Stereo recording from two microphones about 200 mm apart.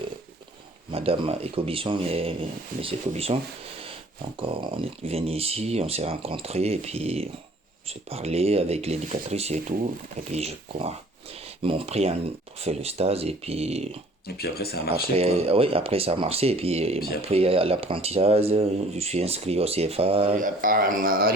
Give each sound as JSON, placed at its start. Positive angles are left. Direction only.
{"t": 0.9, "sound": "speech", "side_deg": -30}
{"t": 4.4, "sound": "speech", "side_deg": -25}
{"t": 14.3, "sound": "speech", "side_deg": 50}
{"t": 15.2, "sound": "speech", "side_deg": -30}
{"t": 20.3, "sound": "speech", "side_deg": -45}